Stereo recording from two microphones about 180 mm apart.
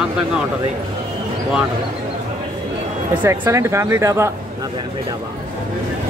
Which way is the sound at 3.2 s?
15° right (ahead or behind).